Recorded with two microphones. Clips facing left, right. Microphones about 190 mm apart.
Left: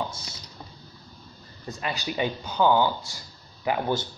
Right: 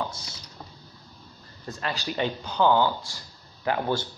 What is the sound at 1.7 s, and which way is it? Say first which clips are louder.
A man's voice: even; 10° left (ahead or behind).